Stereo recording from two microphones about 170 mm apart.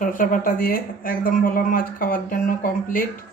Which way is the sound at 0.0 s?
50° left (ahead or behind).